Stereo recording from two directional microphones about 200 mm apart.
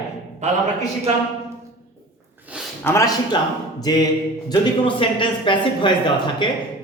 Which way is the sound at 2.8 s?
15° left (ahead or behind).